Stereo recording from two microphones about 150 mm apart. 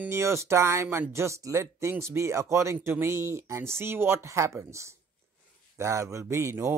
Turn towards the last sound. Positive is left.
turn(degrees=-15)  # may be behind; listen again after turning